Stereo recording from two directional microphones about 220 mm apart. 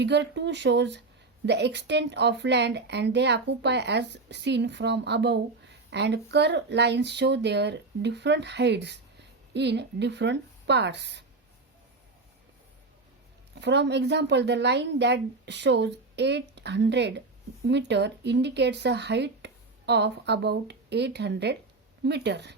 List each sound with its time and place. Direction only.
0.0 s speech: 50° right (ahead or behind)
13.6 s speech: 50° right (ahead or behind)